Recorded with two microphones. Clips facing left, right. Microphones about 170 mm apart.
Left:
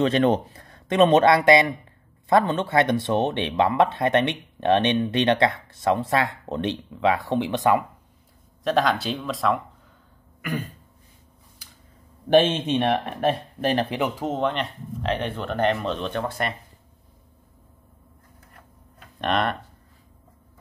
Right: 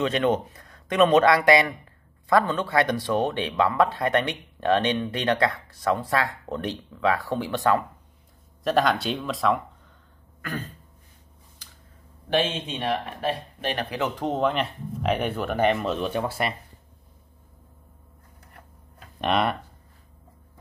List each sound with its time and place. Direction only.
0.0 s speech: 35° left (ahead or behind)
8.6 s speech: centre (ahead or behind)
10.4 s throat clearing: 15° left (ahead or behind)
12.3 s speech: 55° left (ahead or behind)
13.9 s throat clearing: 15° left (ahead or behind)
14.2 s speech: centre (ahead or behind)
19.2 s speech: 5° right (ahead or behind)